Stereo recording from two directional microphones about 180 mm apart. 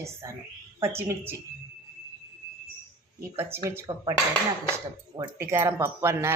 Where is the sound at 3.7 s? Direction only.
15° right (ahead or behind).